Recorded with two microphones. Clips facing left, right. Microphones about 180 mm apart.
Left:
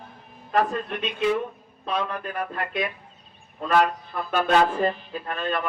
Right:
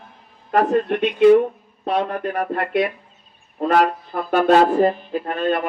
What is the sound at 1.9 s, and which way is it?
Speech, 45° right (ahead or behind).